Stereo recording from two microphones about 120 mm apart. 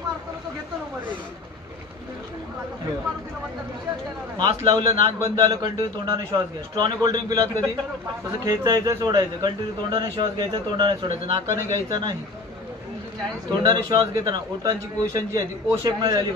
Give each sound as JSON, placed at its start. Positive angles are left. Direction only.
{"t": 4.7, "sound": "a man's voice", "side_deg": -35}
{"t": 13.5, "sound": "a man's voice", "side_deg": -35}